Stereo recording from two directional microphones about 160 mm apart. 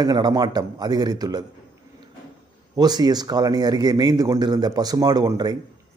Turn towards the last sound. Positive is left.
turn(degrees=-25)  # may be behind; listen again after turning